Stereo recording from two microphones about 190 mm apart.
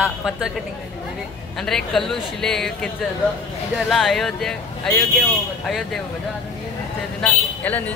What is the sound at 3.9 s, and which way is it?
Speech, centre (ahead or behind).